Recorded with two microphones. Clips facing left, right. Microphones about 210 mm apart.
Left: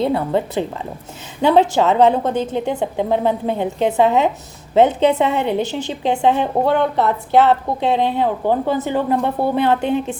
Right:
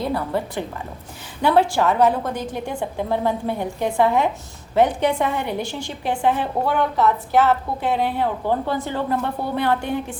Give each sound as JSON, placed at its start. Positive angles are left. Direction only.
{"t": 0.0, "sound": "a woman's voice", "side_deg": 25}